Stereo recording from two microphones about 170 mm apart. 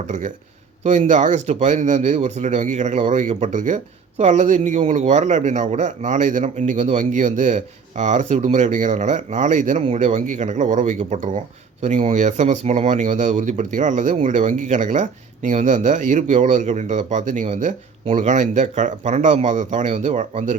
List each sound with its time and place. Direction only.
0.9 s speech: 45° right (ahead or behind)